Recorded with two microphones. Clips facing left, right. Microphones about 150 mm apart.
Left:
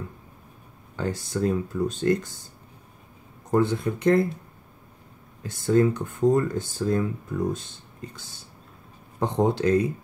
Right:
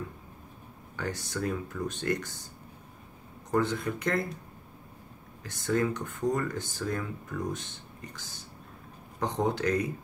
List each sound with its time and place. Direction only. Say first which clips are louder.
0.9 s speech: left 6 dB; 30° left (ahead or behind)
3.5 s speech: left 5 dB; 30° left (ahead or behind)
5.4 s speech: left 8 dB; 30° left (ahead or behind)
9.2 s speech: left 6 dB; 25° left (ahead or behind)